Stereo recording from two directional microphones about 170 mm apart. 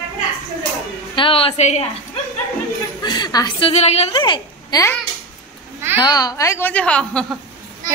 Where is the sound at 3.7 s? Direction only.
40° left (ahead or behind); by 5.0 s 20° left (ahead or behind).